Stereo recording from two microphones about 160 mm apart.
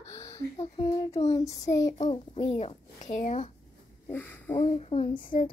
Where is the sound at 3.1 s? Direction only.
50° left (ahead or behind).